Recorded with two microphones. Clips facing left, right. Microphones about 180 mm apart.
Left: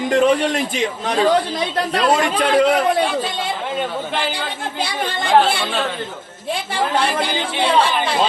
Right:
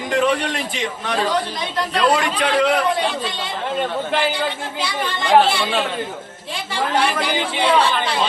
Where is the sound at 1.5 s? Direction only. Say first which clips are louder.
Left 2 dB; 50° left (ahead or behind).